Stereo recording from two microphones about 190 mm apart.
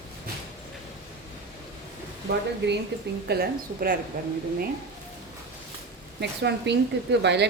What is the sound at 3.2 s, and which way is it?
Speech, 55° right (ahead or behind).